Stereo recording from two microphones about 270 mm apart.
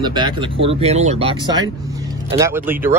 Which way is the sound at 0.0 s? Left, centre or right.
Centre.